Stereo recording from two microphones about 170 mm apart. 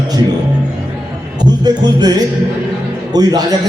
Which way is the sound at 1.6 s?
25° right (ahead or behind).